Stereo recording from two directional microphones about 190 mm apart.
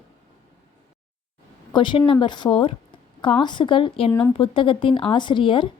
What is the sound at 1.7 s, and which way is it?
A woman's voice, 25° left (ahead or behind).